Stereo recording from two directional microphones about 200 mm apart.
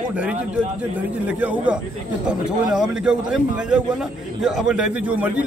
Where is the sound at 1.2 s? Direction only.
5° right (ahead or behind).